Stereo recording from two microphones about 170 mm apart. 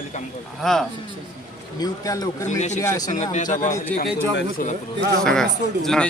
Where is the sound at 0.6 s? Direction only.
5° left (ahead or behind).